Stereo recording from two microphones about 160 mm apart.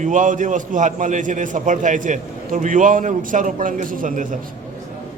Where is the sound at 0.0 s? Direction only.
50° right (ahead or behind).